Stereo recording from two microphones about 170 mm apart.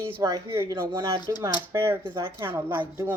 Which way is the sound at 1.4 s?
15° right (ahead or behind).